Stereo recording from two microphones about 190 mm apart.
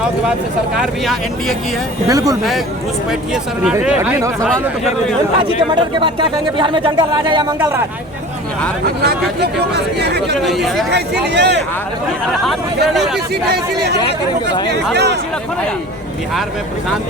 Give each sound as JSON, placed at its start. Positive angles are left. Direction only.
{"t": 0.8, "sound": "speech", "side_deg": 0}
{"t": 2.0, "sound": "speech", "side_deg": -15}
{"t": 3.1, "sound": "speech", "side_deg": -5}
{"t": 5.4, "sound": "speech", "side_deg": -25}
{"t": 7.6, "sound": "speech", "side_deg": -15}
{"t": 9.0, "sound": "speech", "side_deg": -60}
{"t": 10.4, "sound": "speech", "side_deg": 0}
{"t": 10.9, "sound": "speech", "side_deg": -60}
{"t": 12.5, "sound": "speech", "side_deg": 0}
{"t": 13.1, "sound": "speech", "side_deg": -60}
{"t": 14.9, "sound": "speech", "side_deg": -65}